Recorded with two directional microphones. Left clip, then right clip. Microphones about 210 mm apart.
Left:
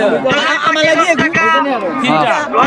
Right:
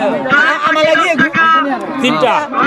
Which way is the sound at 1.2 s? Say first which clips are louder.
Right 1 dB; 15° left (ahead or behind).